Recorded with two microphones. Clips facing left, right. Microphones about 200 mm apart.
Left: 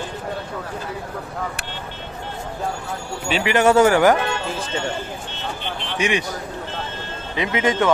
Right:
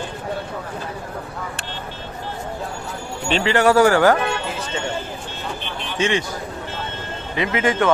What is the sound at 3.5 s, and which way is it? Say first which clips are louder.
Speech: even; 20° left (ahead or behind).